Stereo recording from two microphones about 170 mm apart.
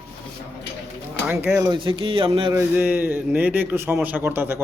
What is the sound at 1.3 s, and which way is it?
Speech, 10° right (ahead or behind).